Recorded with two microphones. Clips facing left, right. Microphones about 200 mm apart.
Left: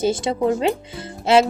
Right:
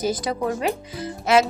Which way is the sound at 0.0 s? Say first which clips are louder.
Left 4 dB; 25° left (ahead or behind).